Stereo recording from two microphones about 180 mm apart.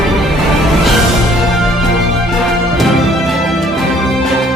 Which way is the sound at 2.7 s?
Centre (ahead or behind).